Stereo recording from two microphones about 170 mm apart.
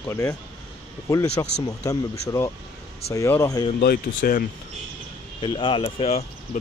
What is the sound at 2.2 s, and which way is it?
Speech, 15° left (ahead or behind).